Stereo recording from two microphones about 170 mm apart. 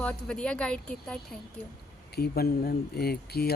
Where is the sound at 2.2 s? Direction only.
65° left (ahead or behind).